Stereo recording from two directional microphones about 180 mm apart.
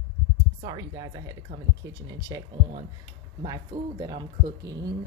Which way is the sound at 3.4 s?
20° right (ahead or behind).